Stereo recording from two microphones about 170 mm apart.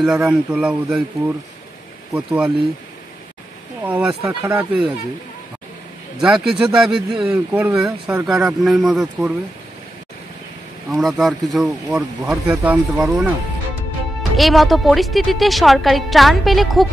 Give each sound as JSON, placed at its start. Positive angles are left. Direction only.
{"t": 0.0, "sound": "a woman's voice", "side_deg": -5}
{"t": 3.8, "sound": "speech", "side_deg": -10}
{"t": 4.3, "sound": "speech", "side_deg": -20}
{"t": 6.2, "sound": "a woman's voice", "side_deg": -5}
{"t": 10.9, "sound": "a woman's voice", "side_deg": 0}
{"t": 14.3, "sound": "a woman's voice", "side_deg": 0}